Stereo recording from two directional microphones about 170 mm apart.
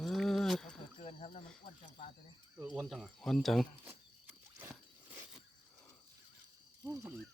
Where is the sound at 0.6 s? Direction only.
40° left (ahead or behind).